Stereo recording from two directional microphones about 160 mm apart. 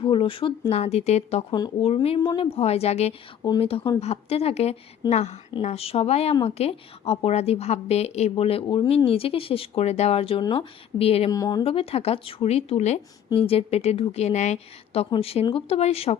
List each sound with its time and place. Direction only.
0.0 s speech: 35° left (ahead or behind)
11.3 s speech: 25° left (ahead or behind)
11.6 s speech: 35° left (ahead or behind)